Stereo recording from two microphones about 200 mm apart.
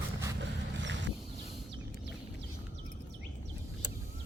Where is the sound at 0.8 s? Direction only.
65° right (ahead or behind).